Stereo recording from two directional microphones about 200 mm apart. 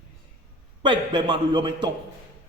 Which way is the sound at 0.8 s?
25° right (ahead or behind).